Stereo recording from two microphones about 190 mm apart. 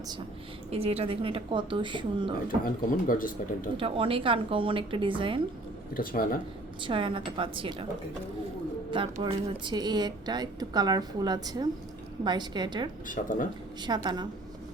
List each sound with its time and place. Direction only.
0.7 s a woman's voice: 30° right (ahead or behind)
2.6 s speech: 45° left (ahead or behind)
3.8 s a woman's voice: 30° right (ahead or behind)
5.9 s speech: 50° left (ahead or behind)
6.8 s a woman's voice: 25° right (ahead or behind)
9.2 s a woman's voice: 25° right (ahead or behind)
13.1 s speech: 45° left (ahead or behind)
13.8 s a woman's voice: 20° right (ahead or behind)